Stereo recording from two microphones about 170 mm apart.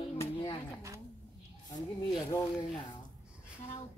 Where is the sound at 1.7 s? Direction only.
25° left (ahead or behind).